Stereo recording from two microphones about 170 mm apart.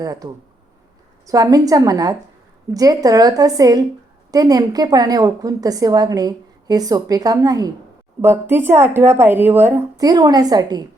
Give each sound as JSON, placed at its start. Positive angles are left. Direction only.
{"t": 0.0, "sound": "a woman's voice", "side_deg": -20}
{"t": 1.3, "sound": "a woman's voice", "side_deg": -20}